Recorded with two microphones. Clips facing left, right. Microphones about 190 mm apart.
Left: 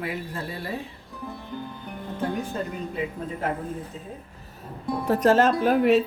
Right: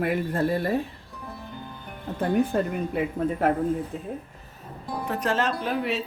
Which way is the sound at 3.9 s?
60° right (ahead or behind).